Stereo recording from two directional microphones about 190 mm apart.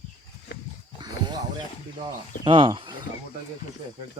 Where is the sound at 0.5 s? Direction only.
60° left (ahead or behind).